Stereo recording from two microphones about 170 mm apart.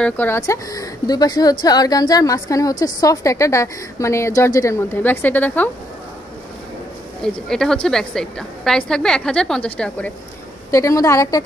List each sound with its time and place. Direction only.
0.0 s speech: 10° left (ahead or behind)
7.2 s a woman's voice: 5° left (ahead or behind)
10.7 s speech: 20° left (ahead or behind)